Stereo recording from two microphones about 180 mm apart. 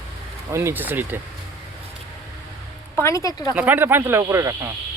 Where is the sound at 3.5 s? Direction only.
10° right (ahead or behind).